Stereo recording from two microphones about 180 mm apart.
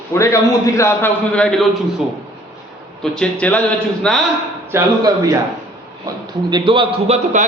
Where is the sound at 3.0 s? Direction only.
5° left (ahead or behind).